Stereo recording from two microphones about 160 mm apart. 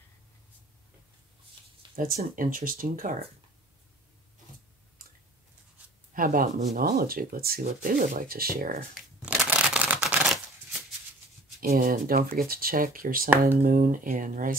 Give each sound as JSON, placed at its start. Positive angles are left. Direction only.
{"t": 2.0, "sound": "speech", "side_deg": -60}
{"t": 6.1, "sound": "speech", "side_deg": -60}
{"t": 6.8, "sound": "speech", "side_deg": -70}
{"t": 9.2, "sound": "a sound", "side_deg": -5}
{"t": 11.6, "sound": "speech", "side_deg": -65}